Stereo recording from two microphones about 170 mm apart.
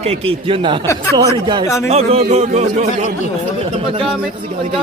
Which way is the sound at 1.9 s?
35° right (ahead or behind).